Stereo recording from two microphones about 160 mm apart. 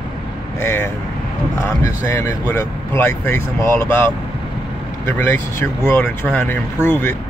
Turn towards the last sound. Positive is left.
turn(degrees=15)  # may be behind; listen again after turning